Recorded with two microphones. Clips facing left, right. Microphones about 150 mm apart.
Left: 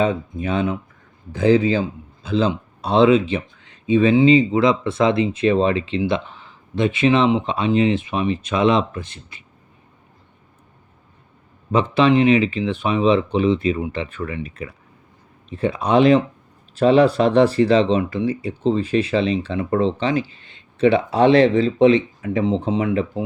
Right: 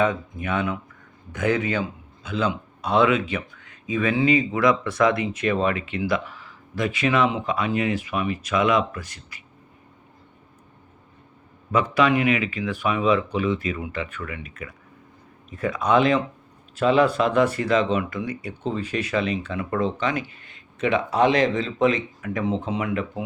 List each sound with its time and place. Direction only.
0.0 s a man's voice: 30° left (ahead or behind)
11.7 s a man's voice: 25° left (ahead or behind)